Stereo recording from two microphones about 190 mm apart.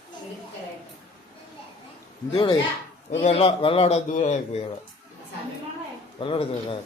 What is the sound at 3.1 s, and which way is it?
A man's voice, 35° left (ahead or behind).